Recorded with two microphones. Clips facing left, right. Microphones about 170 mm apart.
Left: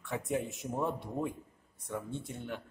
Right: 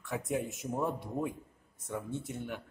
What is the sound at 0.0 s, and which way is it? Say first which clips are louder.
A man's voice: even; centre (ahead or behind).